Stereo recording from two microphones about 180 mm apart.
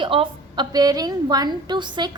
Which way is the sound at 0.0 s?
30° right (ahead or behind).